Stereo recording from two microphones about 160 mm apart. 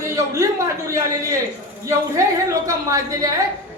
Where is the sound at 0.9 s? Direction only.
20° right (ahead or behind).